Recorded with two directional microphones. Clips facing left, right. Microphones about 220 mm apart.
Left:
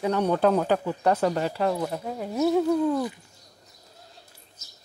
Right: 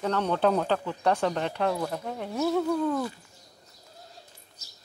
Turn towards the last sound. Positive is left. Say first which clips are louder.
# left 3 dB
turn(degrees=15)  # may be behind; listen again after turning